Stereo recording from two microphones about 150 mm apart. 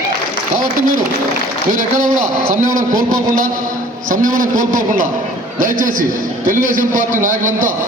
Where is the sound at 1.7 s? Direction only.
60° right (ahead or behind).